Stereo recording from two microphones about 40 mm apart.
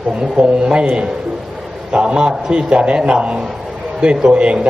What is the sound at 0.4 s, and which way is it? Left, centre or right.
Speech, centre.